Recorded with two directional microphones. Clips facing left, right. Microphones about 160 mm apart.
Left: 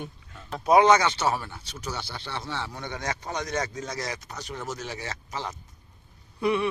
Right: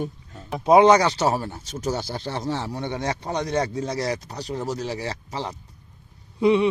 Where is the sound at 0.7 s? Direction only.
25° right (ahead or behind).